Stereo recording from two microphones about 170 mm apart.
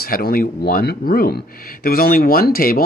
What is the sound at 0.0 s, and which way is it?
Speech, 60° left (ahead or behind).